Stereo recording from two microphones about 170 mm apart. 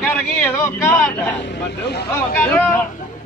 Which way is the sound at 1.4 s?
80° left.